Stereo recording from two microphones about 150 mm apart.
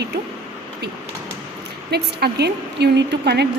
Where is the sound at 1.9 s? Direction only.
90° right.